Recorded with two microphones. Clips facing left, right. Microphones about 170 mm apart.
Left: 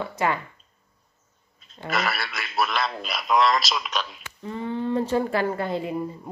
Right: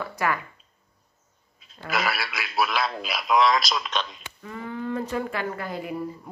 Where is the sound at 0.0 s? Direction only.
25° left (ahead or behind).